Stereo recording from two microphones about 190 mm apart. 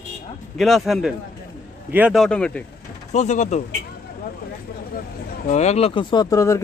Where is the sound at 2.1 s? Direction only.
5° left (ahead or behind).